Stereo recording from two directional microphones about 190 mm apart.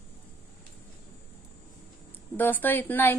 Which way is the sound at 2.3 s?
10° left (ahead or behind).